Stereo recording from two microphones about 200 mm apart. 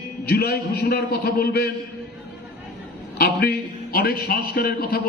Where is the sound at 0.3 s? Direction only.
50° left (ahead or behind).